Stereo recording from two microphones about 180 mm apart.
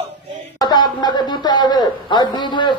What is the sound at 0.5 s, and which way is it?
Speech, 25° left (ahead or behind).